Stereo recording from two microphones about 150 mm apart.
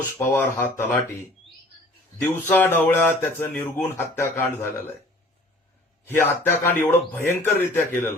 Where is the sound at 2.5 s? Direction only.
10° left (ahead or behind).